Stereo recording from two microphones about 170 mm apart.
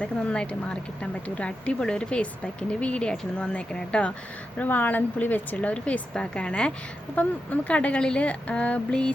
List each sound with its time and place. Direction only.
0.0 s speech: 5° left (ahead or behind)